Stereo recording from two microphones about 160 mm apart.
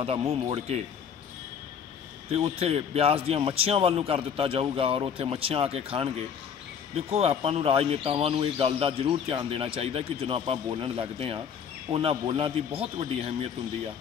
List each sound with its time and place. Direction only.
0.3 s speech: 40° right (ahead or behind)
2.3 s speech: 40° right (ahead or behind)